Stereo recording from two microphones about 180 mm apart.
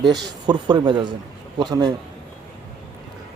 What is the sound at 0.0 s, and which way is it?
A man's voice, 25° right (ahead or behind).